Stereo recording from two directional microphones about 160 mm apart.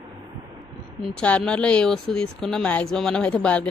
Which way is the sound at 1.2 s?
5° left (ahead or behind).